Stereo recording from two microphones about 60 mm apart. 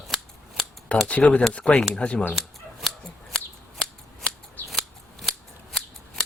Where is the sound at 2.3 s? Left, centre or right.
Centre.